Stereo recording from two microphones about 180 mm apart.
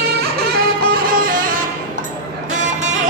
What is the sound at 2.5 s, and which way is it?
Music, 40° right (ahead or behind).